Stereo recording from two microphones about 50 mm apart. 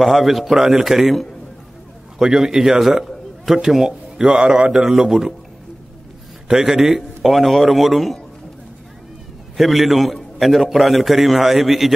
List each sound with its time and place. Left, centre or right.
0.0 s a man's voice: centre
4.4 s a man's voice: centre
4.8 s a man's voice: centre
6.4 s a man's voice: centre
9.6 s a man's voice: centre